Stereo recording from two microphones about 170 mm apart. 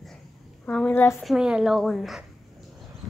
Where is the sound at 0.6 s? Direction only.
5° left (ahead or behind).